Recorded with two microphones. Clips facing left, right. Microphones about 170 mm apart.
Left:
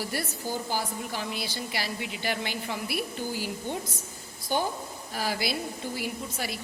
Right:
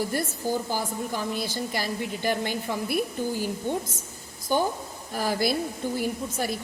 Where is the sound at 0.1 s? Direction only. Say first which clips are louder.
Right 5 dB; 50° right (ahead or behind).